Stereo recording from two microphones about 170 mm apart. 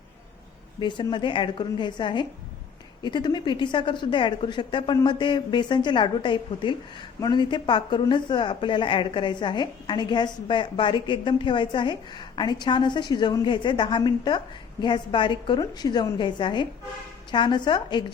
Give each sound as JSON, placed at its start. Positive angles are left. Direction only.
{"t": 0.8, "sound": "a woman's voice", "side_deg": 25}